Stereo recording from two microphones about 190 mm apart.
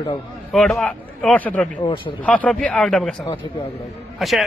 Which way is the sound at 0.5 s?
Centre (ahead or behind).